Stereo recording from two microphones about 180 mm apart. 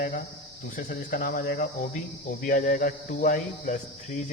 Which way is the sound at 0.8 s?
50° left (ahead or behind).